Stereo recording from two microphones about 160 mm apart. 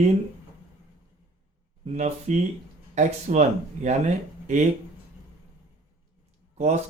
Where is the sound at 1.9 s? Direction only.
45° right (ahead or behind).